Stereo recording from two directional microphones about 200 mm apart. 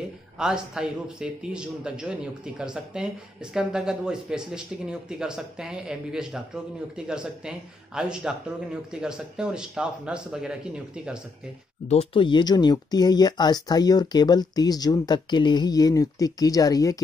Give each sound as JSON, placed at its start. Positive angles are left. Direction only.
{"t": 0.4, "sound": "speech", "side_deg": -5}
{"t": 11.9, "sound": "speech", "side_deg": 30}